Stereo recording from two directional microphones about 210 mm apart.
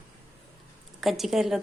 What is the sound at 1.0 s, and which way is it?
Speech, centre (ahead or behind).